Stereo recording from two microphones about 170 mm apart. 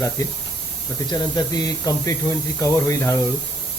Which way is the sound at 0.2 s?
20° left (ahead or behind).